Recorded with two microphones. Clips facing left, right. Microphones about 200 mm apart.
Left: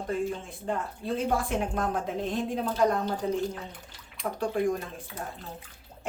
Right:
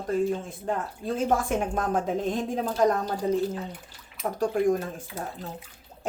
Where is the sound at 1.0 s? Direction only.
45° right (ahead or behind).